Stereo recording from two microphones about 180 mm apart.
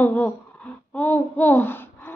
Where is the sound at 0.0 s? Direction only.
10° left (ahead or behind).